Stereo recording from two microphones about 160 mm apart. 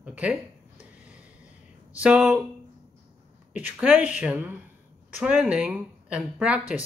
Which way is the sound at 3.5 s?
10° right (ahead or behind).